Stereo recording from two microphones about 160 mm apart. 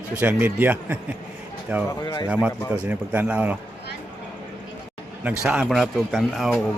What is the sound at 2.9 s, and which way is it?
Speech, 10° right (ahead or behind).